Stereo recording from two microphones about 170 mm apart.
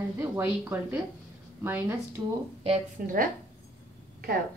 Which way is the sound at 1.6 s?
10° right (ahead or behind).